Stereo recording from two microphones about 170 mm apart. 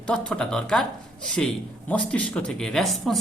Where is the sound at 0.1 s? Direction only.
5° left (ahead or behind).